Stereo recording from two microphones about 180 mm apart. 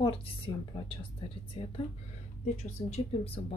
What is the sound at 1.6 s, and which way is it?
Speech, 30° left (ahead or behind).